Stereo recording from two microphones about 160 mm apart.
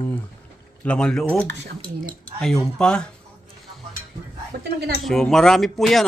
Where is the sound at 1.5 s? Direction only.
90° right.